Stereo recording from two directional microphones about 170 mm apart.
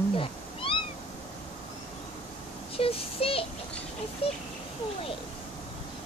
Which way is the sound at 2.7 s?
35° left (ahead or behind).